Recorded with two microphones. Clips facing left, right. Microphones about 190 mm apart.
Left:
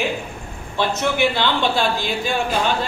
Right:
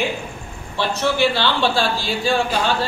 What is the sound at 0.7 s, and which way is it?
A man's voice, 20° left (ahead or behind).